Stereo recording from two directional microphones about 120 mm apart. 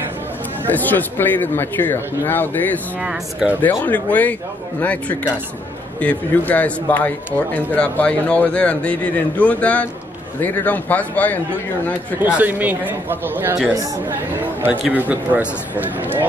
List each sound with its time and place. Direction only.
0.7 s speech: 15° left (ahead or behind)
3.0 s a man's voice: 5° right (ahead or behind)
3.8 s speech: 15° left (ahead or behind)
5.9 s speech: 15° left (ahead or behind)
12.2 s a man's voice: 15° right (ahead or behind)